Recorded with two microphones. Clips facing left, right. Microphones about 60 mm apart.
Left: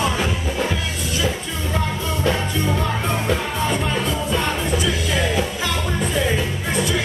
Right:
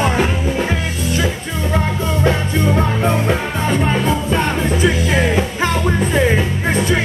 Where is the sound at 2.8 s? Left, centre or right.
Right.